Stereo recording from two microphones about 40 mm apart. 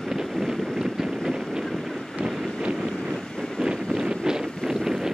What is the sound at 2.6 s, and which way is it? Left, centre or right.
Vehicle, right.